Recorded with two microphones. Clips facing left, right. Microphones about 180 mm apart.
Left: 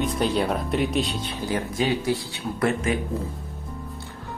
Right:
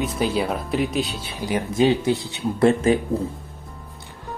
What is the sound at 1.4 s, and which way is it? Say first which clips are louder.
Speech: right 6 dB; 20° right (ahead or behind).